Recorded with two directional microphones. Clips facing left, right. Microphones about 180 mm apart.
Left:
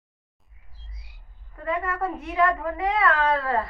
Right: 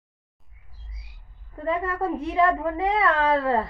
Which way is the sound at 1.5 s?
30° right (ahead or behind).